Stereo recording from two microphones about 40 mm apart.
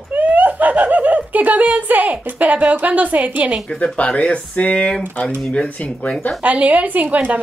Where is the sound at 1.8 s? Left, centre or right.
Right.